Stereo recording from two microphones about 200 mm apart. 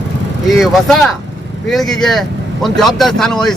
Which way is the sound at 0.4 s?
Centre (ahead or behind).